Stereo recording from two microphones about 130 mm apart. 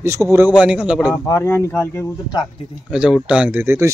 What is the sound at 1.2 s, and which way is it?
Speech, 20° left (ahead or behind).